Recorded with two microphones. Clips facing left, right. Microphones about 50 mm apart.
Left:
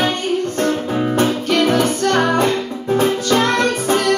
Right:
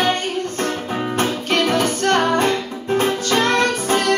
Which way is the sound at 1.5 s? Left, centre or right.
Right.